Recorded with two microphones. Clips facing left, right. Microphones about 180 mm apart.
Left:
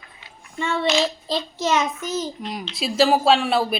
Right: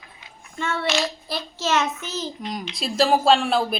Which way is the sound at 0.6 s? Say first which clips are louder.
Left 3 dB; 15° left (ahead or behind).